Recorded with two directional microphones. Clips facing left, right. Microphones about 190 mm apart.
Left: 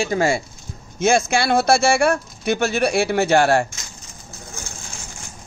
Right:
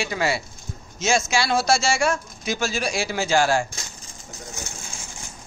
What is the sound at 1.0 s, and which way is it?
Speech, 55° left (ahead or behind).